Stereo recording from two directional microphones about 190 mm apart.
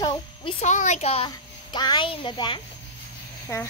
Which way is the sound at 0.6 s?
40° left (ahead or behind).